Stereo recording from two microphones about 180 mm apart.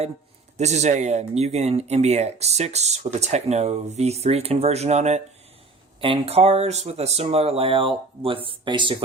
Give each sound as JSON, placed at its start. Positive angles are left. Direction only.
{"t": 0.5, "sound": "speech", "side_deg": -40}